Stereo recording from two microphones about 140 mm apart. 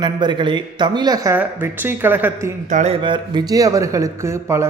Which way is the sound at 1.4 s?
15° right (ahead or behind).